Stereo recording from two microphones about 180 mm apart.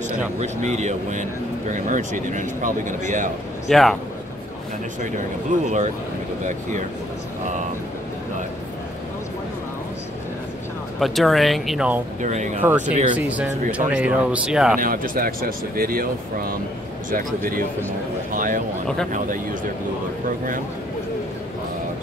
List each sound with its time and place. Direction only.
0.4 s speech: 40° right (ahead or behind)
3.6 s speech: centre (ahead or behind)
5.5 s speech: 45° right (ahead or behind)
11.0 s speech: centre (ahead or behind)
12.2 s speech: 40° right (ahead or behind)
13.3 s speech: 5° right (ahead or behind)
14.8 s speech: 50° right (ahead or behind)
18.3 s a sound: 50° right (ahead or behind)